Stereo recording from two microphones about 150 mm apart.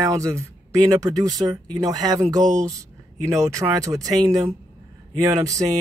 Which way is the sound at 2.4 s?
55° right (ahead or behind).